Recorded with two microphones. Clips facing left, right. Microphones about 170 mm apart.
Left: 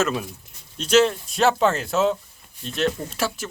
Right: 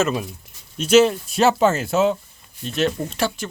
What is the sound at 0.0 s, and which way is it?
Speech, centre (ahead or behind).